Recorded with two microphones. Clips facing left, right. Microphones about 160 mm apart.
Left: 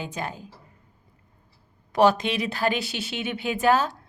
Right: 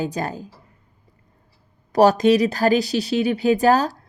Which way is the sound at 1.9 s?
40° right (ahead or behind).